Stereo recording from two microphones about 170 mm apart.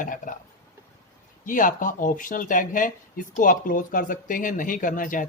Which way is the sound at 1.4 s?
50° left (ahead or behind).